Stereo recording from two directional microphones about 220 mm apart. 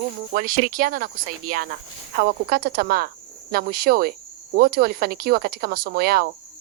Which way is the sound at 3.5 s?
45° right (ahead or behind).